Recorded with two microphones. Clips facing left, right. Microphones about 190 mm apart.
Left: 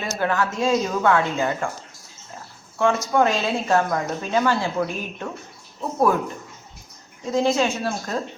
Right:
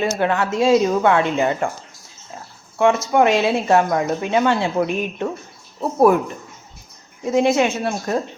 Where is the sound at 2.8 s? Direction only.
20° right (ahead or behind).